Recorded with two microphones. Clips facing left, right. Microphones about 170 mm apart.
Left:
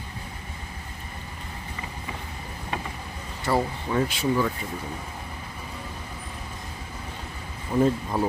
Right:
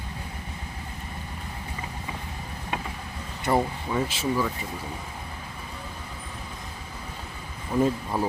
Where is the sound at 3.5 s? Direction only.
20° right (ahead or behind).